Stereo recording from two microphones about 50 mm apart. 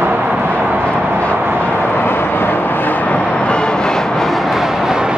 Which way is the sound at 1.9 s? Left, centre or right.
Left.